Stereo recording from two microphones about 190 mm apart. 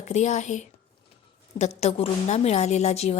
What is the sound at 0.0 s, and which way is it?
A woman's voice, 35° left (ahead or behind).